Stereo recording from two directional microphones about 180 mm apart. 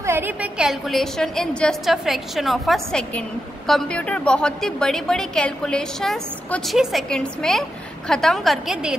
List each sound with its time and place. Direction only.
0.0 s a woman's voice: 10° right (ahead or behind)